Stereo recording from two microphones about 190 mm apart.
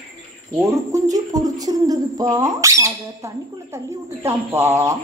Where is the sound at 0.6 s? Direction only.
15° right (ahead or behind).